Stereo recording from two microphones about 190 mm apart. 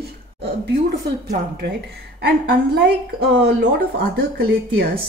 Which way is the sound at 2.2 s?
60° right (ahead or behind).